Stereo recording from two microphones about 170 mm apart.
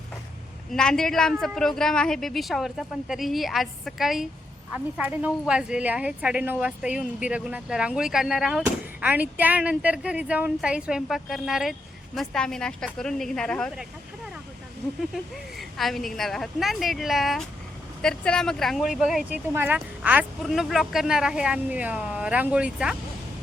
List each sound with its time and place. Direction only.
0.7 s a woman's voice: 5° left (ahead or behind)
15.1 s a woman's voice: centre (ahead or behind)